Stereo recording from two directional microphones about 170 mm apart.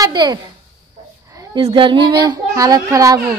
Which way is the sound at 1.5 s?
25° right (ahead or behind).